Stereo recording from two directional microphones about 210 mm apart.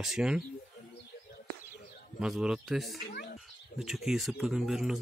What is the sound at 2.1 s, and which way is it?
Speech, centre (ahead or behind).